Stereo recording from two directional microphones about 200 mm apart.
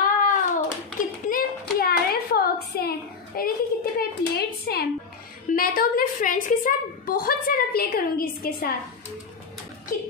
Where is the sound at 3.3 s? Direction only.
50° left (ahead or behind).